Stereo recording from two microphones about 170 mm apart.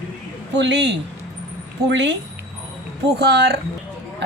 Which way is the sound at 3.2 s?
75° right (ahead or behind).